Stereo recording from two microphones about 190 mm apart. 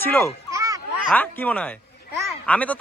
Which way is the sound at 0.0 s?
10° left (ahead or behind).